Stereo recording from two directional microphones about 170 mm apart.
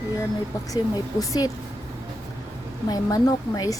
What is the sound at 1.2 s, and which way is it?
Speech, 20° left (ahead or behind).